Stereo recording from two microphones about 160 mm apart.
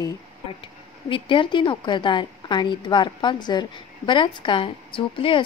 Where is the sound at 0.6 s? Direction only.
30° left (ahead or behind).